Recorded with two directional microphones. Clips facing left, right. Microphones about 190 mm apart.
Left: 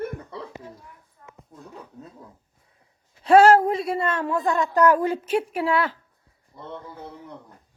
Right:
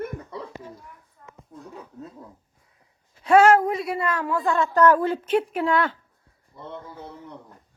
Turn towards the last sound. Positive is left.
turn(degrees=10)  # may be behind; listen again after turning